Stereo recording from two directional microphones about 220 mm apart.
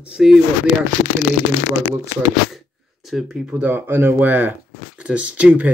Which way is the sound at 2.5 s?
Centre (ahead or behind).